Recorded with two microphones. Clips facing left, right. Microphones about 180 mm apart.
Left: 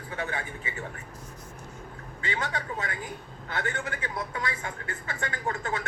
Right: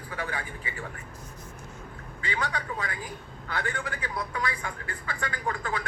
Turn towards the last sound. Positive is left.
turn(degrees=25)  # may be behind; listen again after turning